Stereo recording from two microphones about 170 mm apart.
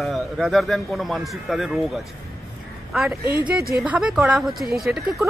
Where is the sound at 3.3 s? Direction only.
10° right (ahead or behind).